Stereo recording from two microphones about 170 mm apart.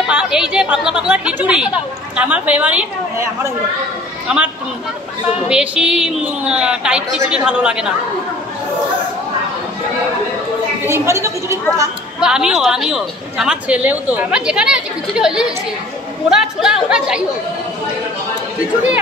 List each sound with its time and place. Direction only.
0.0 s a woman's voice: 5° right (ahead or behind)
4.3 s a woman's voice: 5° right (ahead or behind)
5.5 s a woman's voice: 5° right (ahead or behind)
10.9 s a woman's voice: 15° right (ahead or behind)
12.2 s a woman's voice: 5° right (ahead or behind)